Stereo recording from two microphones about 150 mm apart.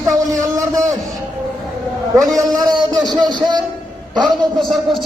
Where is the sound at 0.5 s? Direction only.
25° right (ahead or behind).